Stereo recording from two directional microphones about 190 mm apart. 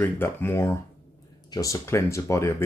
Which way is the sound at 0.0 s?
10° left (ahead or behind).